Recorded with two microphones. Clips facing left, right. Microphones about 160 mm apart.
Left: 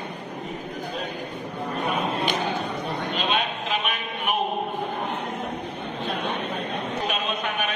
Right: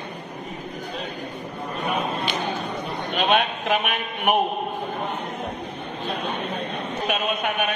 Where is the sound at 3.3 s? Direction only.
60° right (ahead or behind).